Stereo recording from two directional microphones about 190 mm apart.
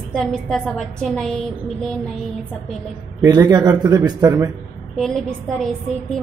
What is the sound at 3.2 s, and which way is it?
Speech, 20° right (ahead or behind).